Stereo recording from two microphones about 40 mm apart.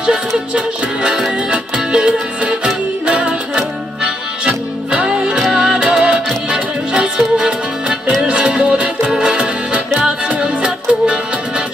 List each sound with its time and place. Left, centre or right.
1.5 s music: right
8.3 s music: right